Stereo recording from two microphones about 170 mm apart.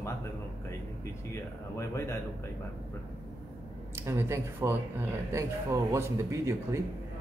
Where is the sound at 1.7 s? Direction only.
15° left (ahead or behind).